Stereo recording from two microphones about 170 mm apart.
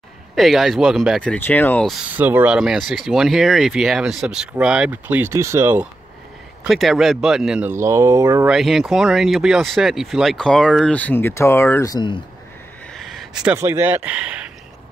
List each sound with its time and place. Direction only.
0.4 s speech: centre (ahead or behind)
1.9 s speech: 10° right (ahead or behind)
6.6 s speech: centre (ahead or behind)
7.7 s speech: 15° right (ahead or behind)
8.5 s speech: centre (ahead or behind); by 12.2 s 25° left (ahead or behind)
12.9 s a sound: centre (ahead or behind)
13.6 s speech: 15° right (ahead or behind)